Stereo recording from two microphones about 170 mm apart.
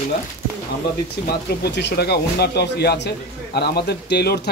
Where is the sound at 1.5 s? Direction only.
80° left.